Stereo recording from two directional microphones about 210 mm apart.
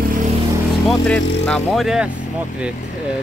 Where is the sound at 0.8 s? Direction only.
5° left (ahead or behind).